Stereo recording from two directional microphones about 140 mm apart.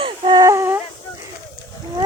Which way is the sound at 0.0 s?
35° right (ahead or behind).